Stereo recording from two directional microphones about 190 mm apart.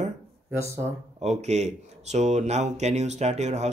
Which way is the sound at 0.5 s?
15° right (ahead or behind).